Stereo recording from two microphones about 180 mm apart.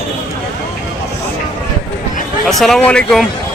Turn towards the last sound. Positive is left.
turn(degrees=5)  # may be behind; listen again after turning